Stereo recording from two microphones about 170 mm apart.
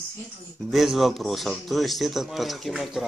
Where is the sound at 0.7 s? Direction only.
Centre (ahead or behind).